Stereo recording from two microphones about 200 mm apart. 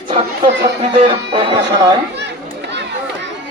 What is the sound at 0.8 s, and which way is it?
Speech, 25° right (ahead or behind).